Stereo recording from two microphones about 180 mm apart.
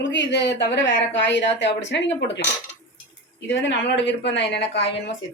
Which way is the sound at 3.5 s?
75° left (ahead or behind).